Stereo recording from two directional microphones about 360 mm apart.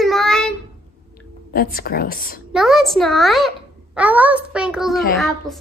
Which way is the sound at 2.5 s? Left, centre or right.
Centre.